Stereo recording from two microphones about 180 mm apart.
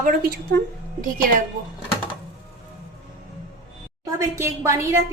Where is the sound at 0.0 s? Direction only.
55° right (ahead or behind).